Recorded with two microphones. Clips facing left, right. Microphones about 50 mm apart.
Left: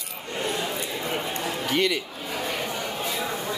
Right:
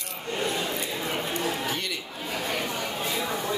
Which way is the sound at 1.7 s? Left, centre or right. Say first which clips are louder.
Left 7 dB; left.